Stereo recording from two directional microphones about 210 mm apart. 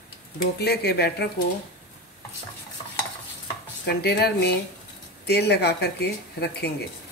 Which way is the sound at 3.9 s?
50° left (ahead or behind).